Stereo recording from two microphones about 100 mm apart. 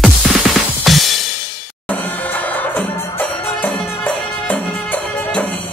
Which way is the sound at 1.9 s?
15° left (ahead or behind).